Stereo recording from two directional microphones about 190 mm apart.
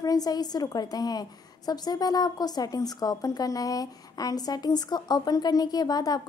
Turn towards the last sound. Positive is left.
turn(degrees=20)  # may be behind; listen again after turning